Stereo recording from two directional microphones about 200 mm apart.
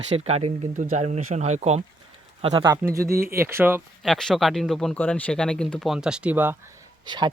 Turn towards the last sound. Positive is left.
turn(degrees=-20)  # may be behind; listen again after turning